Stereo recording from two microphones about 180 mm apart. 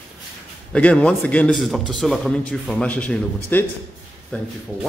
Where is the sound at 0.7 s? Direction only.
5° left (ahead or behind).